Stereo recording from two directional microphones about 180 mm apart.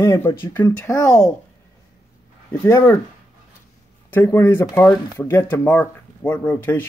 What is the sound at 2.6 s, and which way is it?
Speech, 15° left (ahead or behind).